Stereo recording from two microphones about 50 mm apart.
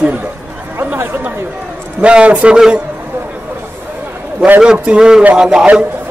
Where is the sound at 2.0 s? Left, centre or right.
Right.